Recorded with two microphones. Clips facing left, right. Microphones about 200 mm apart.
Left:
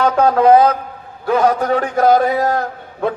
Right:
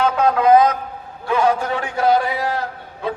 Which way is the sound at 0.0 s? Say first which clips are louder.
Left 4 dB; 35° left (ahead or behind).